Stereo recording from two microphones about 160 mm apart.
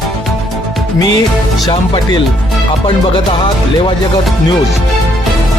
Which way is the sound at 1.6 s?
30° left (ahead or behind).